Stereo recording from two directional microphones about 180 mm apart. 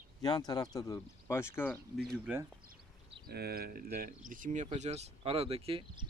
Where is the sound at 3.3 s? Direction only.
60° right (ahead or behind); by 6.1 s 30° right (ahead or behind).